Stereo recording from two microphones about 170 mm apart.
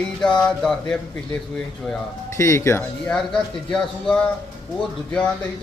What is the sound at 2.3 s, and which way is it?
Speech, 15° left (ahead or behind).